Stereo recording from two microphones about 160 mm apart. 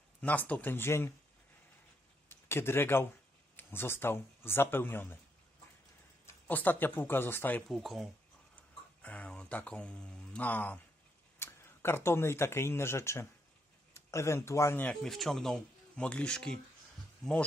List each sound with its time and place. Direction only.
0.2 s speech: 10° left (ahead or behind)
2.2 s a man's voice: 15° left (ahead or behind)
6.2 s speech: 10° left (ahead or behind)
15.0 s speech: centre (ahead or behind)